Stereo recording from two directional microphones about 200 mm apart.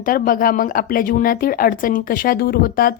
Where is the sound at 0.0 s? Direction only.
45° left (ahead or behind).